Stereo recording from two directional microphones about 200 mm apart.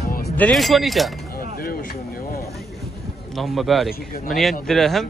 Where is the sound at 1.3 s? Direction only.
50° left (ahead or behind).